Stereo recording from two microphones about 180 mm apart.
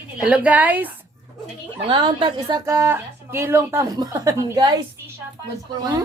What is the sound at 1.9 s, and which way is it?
Speech, 25° right (ahead or behind).